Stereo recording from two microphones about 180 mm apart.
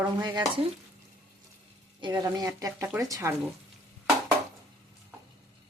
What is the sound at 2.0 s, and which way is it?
Speech, 25° right (ahead or behind).